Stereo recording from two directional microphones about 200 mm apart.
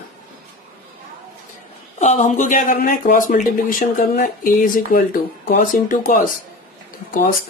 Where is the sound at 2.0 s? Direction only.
35° left (ahead or behind).